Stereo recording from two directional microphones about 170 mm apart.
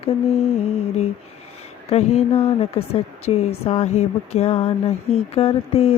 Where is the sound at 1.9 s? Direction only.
35° left (ahead or behind).